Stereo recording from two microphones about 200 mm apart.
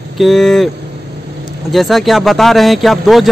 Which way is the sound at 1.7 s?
Centre (ahead or behind).